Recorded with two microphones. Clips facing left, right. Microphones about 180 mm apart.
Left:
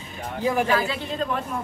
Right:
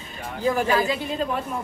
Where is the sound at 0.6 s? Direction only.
15° right (ahead or behind).